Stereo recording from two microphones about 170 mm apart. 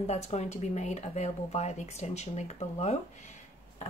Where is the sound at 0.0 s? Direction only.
40° left (ahead or behind).